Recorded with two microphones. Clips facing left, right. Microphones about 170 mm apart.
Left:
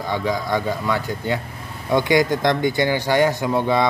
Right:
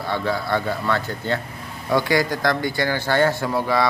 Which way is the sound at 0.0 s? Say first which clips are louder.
Left 1 dB; 15° left (ahead or behind).